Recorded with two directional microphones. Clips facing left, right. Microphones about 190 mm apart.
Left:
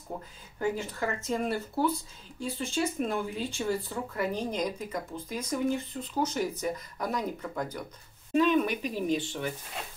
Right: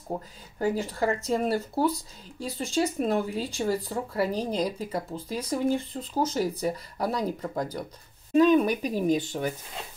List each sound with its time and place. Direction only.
0.6 s speech: 35° right (ahead or behind)